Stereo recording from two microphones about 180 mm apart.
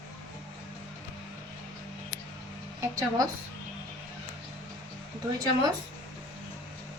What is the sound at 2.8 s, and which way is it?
Speech, 20° right (ahead or behind).